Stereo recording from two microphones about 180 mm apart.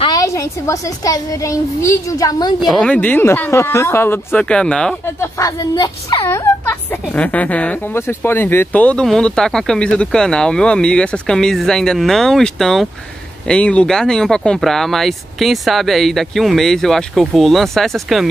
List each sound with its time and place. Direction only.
0.0 s a child's voice: 20° left (ahead or behind)
2.6 s speech: centre (ahead or behind)